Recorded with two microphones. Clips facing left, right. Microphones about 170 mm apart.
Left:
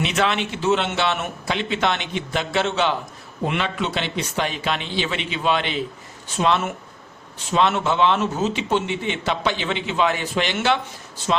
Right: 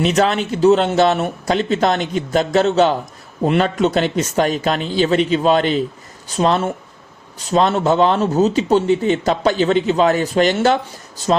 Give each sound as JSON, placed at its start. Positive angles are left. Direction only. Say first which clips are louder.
{"t": 0.0, "sound": "a man's voice", "louder": "right 6 dB", "side_deg": -40}